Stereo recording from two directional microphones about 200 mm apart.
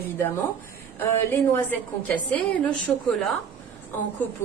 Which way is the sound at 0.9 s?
10° left (ahead or behind).